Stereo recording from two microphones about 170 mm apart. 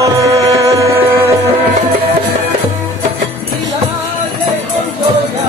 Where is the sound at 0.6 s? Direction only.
20° right (ahead or behind).